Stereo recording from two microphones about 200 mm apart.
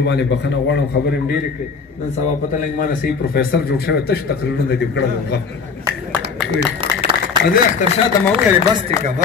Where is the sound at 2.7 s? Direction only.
45° left (ahead or behind).